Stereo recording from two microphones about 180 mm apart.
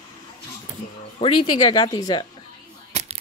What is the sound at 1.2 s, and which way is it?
Speech, 25° left (ahead or behind).